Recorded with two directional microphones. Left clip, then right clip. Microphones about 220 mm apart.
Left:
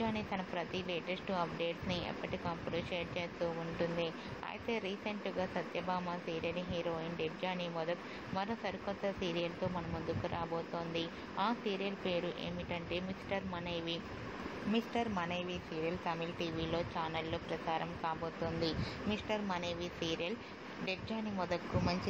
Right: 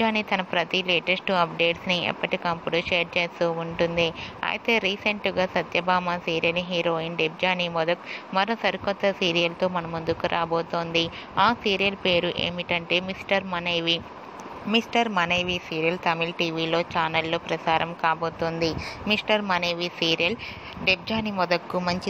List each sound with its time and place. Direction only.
0.0 s speech: 50° right (ahead or behind)
10.5 s speech: 30° right (ahead or behind)
10.9 s speech: 50° right (ahead or behind)
18.2 s speech: 30° right (ahead or behind)
19.0 s speech: 50° right (ahead or behind)